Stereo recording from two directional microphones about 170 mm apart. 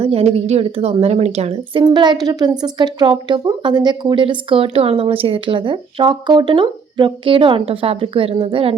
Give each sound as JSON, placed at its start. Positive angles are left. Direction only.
{"t": 0.0, "sound": "speech", "side_deg": -35}
{"t": 1.8, "sound": "a woman's voice", "side_deg": -25}